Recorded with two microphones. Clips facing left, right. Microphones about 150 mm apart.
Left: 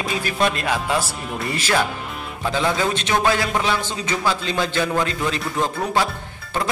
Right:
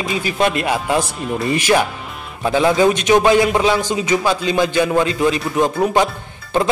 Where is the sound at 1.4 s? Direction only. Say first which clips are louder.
Right 5 dB; 15° right (ahead or behind).